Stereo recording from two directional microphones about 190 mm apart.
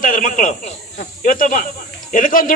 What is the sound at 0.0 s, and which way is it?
A man's voice, 45° left (ahead or behind).